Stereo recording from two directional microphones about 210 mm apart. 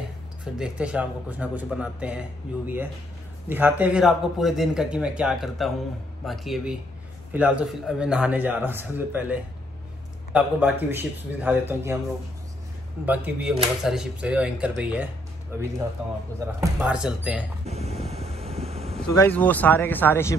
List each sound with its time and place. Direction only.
0.6 s a man's voice: 5° right (ahead or behind)
13.0 s a man's voice: 10° right (ahead or behind)
16.3 s a man's voice: 5° right (ahead or behind)
17.6 s a sound: 30° right (ahead or behind)
18.1 s vehicle: 30° right (ahead or behind)
19.0 s speech: 15° left (ahead or behind)
19.3 s speech: 5° left (ahead or behind)